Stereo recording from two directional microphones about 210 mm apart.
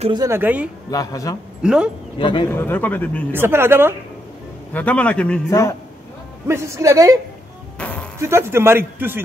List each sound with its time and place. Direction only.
0.0 s speech: 20° right (ahead or behind)
0.8 s a man's voice: 15° left (ahead or behind)
1.6 s speech: 5° right (ahead or behind)
2.1 s speech: 25° left (ahead or behind)
2.5 s a man's voice: 10° left (ahead or behind)
3.3 s speech: 10° right (ahead or behind)
4.7 s a man's voice: 5° left (ahead or behind)
6.4 s speech: 15° right (ahead or behind)
7.8 s music: 5° left (ahead or behind)
8.2 s speech: 10° right (ahead or behind)